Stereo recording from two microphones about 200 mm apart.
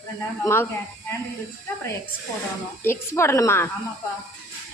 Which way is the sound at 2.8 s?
10° left (ahead or behind).